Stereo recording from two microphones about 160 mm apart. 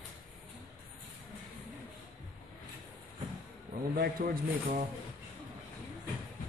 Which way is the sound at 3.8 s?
65° right (ahead or behind).